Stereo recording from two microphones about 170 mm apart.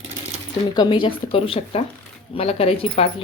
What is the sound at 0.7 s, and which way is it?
Speech, 25° left (ahead or behind).